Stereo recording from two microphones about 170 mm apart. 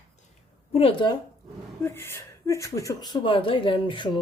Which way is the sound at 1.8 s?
15° left (ahead or behind).